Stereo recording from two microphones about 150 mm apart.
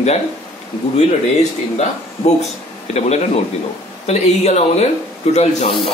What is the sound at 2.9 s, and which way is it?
Speech, 45° left (ahead or behind).